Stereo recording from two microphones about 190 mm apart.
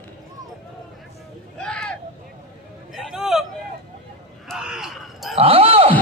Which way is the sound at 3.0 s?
Centre (ahead or behind).